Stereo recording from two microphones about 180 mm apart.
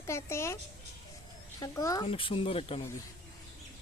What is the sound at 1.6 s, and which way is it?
A child's voice, 20° left (ahead or behind).